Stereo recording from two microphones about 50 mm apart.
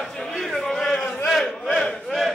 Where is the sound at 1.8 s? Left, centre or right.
Centre.